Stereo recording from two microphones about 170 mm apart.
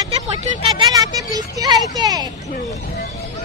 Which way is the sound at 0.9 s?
20° right (ahead or behind).